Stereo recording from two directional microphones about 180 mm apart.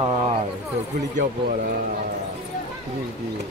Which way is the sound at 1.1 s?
50° right (ahead or behind).